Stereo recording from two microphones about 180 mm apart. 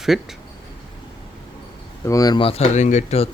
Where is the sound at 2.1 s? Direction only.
20° left (ahead or behind); by 3.3 s 40° left (ahead or behind).